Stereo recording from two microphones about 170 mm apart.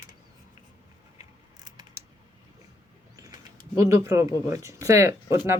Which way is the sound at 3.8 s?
15° right (ahead or behind).